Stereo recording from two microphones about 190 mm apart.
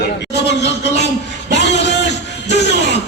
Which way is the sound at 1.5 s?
65° left (ahead or behind).